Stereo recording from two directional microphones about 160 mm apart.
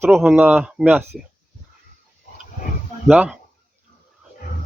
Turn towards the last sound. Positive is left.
turn(degrees=-5)  # may be behind; listen again after turning